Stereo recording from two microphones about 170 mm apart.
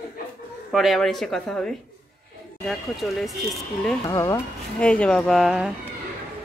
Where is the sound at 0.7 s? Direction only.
Centre (ahead or behind).